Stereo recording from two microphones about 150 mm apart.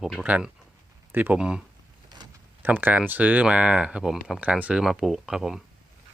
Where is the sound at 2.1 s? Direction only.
30° right (ahead or behind).